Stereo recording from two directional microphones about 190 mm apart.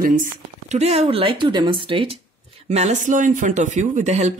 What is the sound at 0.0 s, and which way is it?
Speech, 40° right (ahead or behind).